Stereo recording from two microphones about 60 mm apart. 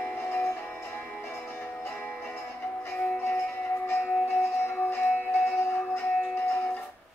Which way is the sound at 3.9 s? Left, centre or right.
Left.